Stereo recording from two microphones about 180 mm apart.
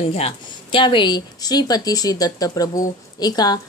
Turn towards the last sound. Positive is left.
turn(degrees=20)  # may be behind; listen again after turning